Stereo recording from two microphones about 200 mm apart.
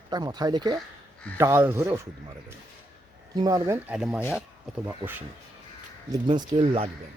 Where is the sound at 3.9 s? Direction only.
5° right (ahead or behind).